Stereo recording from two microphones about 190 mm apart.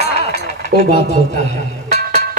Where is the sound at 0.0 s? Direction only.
60° left (ahead or behind).